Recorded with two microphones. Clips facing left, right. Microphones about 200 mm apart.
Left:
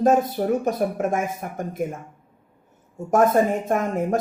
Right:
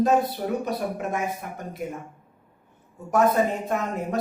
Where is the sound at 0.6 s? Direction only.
45° left (ahead or behind).